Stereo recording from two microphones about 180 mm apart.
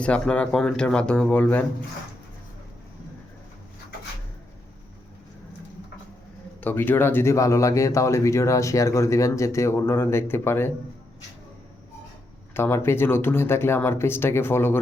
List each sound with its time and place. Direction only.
0.0 s speech: 5° left (ahead or behind)
6.6 s speech: 10° left (ahead or behind)
12.5 s speech: 15° left (ahead or behind)